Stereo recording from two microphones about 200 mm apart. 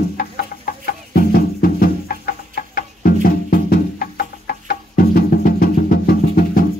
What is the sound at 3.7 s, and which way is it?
Music, 50° left (ahead or behind).